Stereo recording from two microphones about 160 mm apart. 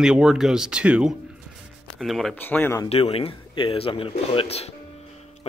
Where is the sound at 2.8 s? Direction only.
40° left (ahead or behind).